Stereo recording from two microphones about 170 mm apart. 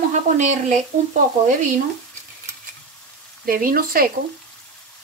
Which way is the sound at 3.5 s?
55° right (ahead or behind).